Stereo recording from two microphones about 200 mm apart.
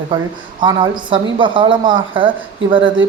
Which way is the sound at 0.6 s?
25° right (ahead or behind).